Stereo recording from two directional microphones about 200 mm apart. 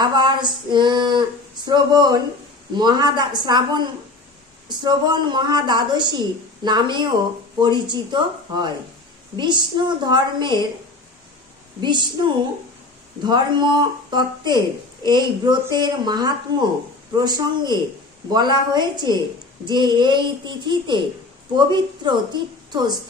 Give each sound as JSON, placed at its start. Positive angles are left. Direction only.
{"t": 0.0, "sound": "a woman's voice", "side_deg": -20}
{"t": 11.8, "sound": "a woman's voice", "side_deg": -20}
{"t": 13.2, "sound": "a woman's voice", "side_deg": -20}